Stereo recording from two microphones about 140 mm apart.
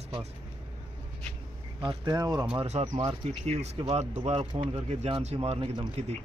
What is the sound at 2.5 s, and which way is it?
Speech, 50° right (ahead or behind).